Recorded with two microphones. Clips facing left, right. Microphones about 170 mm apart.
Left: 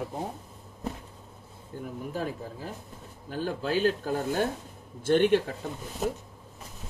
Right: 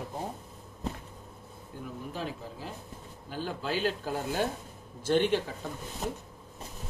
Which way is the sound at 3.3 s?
50° left (ahead or behind).